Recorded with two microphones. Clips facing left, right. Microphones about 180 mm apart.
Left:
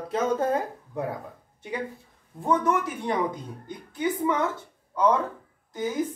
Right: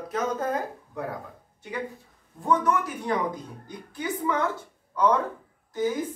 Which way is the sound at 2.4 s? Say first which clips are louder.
Even; 25° left (ahead or behind).